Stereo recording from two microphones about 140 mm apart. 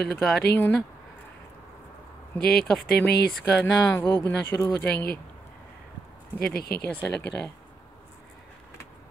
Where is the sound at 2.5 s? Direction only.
5° left (ahead or behind).